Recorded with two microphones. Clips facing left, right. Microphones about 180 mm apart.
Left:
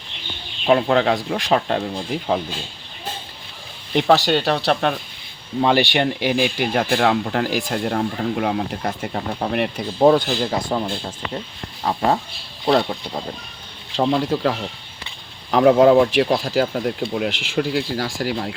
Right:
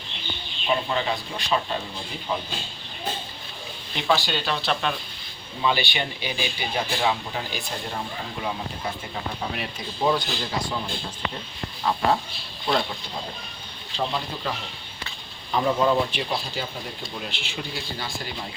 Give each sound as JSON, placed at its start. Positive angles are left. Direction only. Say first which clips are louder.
{"t": 0.7, "sound": "speech", "louder": "left 9 dB", "side_deg": 65}
{"t": 2.3, "sound": "speech", "louder": "left 7 dB", "side_deg": 80}
{"t": 3.9, "sound": "speech", "louder": "left 8 dB", "side_deg": 65}
{"t": 4.6, "sound": "speech", "louder": "left 7 dB", "side_deg": 55}
{"t": 5.6, "sound": "speech", "louder": "left 7 dB", "side_deg": 80}
{"t": 9.1, "sound": "speech", "louder": "left 8 dB", "side_deg": 55}
{"t": 12.6, "sound": "speech", "louder": "left 7 dB", "side_deg": 35}
{"t": 13.9, "sound": "speech", "louder": "left 10 dB", "side_deg": 75}
{"t": 15.5, "sound": "speech", "louder": "left 9 dB", "side_deg": 70}